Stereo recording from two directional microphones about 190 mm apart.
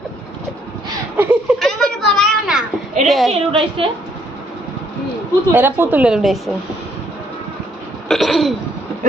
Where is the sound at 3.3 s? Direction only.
30° right (ahead or behind).